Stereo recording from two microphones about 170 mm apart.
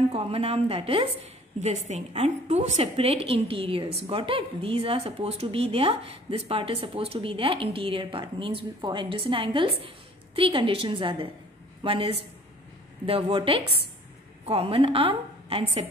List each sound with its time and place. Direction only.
0.1 s a woman's voice: 35° right (ahead or behind)